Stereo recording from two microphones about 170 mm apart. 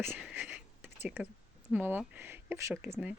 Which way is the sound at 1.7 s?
10° right (ahead or behind).